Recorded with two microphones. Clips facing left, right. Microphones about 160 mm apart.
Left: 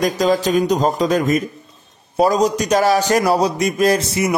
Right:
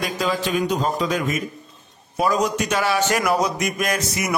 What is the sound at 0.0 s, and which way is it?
A man's voice, 40° left (ahead or behind).